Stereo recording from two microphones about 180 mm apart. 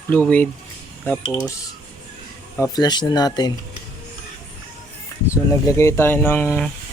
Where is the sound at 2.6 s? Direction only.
20° left (ahead or behind).